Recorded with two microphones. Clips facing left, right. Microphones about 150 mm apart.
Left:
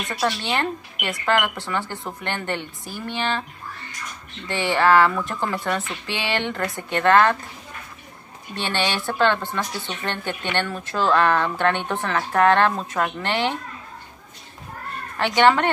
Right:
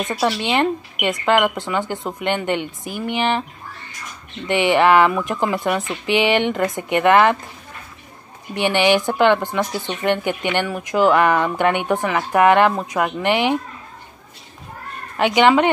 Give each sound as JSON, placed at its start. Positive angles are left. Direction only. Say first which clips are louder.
{"t": 0.1, "sound": "speech", "louder": "right 3 dB", "side_deg": -15}
{"t": 4.5, "sound": "speech", "louder": "right 4 dB", "side_deg": -20}
{"t": 8.5, "sound": "speech", "louder": "right 9 dB", "side_deg": -15}
{"t": 15.1, "sound": "speech", "louder": "right 3 dB", "side_deg": -15}